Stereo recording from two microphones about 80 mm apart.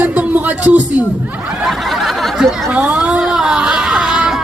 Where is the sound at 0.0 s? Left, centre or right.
Centre.